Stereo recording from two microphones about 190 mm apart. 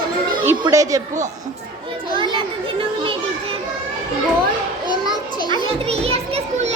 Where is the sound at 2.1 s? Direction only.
25° right (ahead or behind).